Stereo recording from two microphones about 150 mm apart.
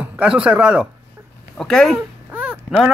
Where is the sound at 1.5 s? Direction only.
5° left (ahead or behind).